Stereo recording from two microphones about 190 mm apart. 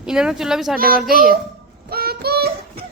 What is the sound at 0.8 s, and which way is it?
Speech, 50° right (ahead or behind).